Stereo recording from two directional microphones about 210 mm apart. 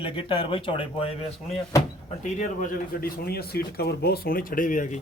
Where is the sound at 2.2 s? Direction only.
35° left (ahead or behind).